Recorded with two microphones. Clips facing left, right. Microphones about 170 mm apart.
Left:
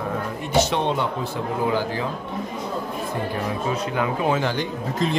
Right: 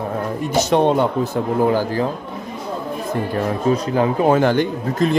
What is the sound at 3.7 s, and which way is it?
Speech, 35° right (ahead or behind).